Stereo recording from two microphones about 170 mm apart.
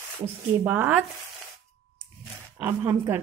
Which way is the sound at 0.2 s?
15° right (ahead or behind).